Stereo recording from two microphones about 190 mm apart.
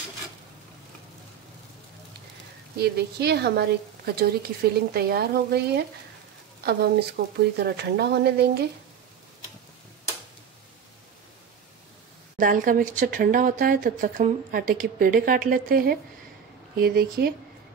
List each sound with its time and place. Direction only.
2.8 s speech: 60° right (ahead or behind)
12.4 s speech: 45° right (ahead or behind)